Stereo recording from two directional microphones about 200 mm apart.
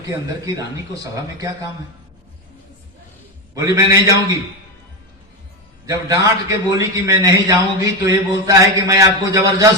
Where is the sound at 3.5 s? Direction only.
15° right (ahead or behind).